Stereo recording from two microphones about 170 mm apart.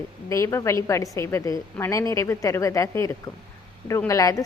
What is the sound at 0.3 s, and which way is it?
A woman's voice, 15° left (ahead or behind).